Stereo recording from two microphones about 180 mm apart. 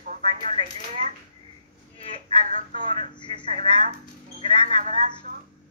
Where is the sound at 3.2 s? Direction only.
25° left (ahead or behind).